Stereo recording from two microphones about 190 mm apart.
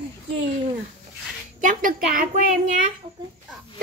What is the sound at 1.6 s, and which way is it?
Speech, 45° right (ahead or behind).